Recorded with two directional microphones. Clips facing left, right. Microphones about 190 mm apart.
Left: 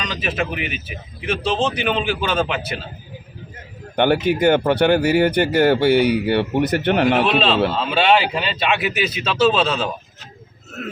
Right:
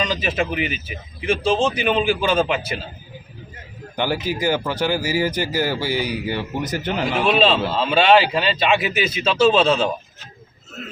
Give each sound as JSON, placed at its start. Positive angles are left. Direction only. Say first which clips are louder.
{"t": 0.0, "sound": "speech", "louder": "right 2 dB", "side_deg": 0}
{"t": 3.9, "sound": "speech", "louder": "left 6 dB", "side_deg": 60}
{"t": 7.3, "sound": "speech", "louder": "even", "side_deg": 0}
{"t": 10.8, "sound": "a man's voice", "louder": "left 6 dB", "side_deg": 60}